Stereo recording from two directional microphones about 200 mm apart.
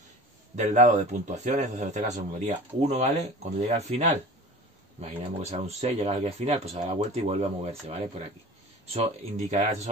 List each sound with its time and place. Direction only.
0.6 s speech: 35° right (ahead or behind)